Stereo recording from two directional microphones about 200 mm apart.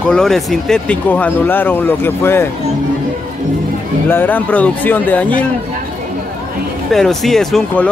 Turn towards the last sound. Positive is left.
turn(degrees=0)  # may be behind; listen again after turning